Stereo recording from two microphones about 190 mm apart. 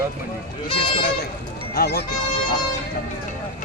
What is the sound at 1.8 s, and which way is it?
Speech, 60° left (ahead or behind).